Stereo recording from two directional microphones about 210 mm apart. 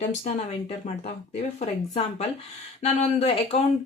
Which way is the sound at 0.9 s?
35° left (ahead or behind).